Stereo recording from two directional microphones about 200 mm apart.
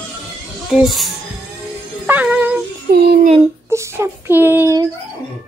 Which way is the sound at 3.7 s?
10° right (ahead or behind).